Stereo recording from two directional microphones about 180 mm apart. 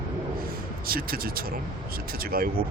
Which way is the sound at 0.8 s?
55° right (ahead or behind).